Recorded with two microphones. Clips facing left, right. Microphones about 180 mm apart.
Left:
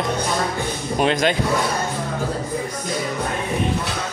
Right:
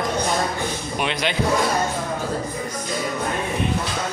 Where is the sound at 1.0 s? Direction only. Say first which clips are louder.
Left 7 dB; 40° left (ahead or behind).